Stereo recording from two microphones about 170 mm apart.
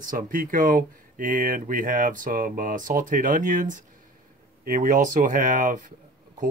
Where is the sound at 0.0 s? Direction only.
50° right (ahead or behind).